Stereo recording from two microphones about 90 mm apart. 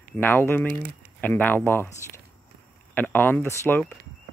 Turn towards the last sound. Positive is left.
turn(degrees=25)  # may be behind; listen again after turning